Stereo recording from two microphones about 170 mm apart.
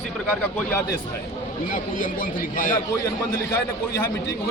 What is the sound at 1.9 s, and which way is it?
Speech, 50° left (ahead or behind).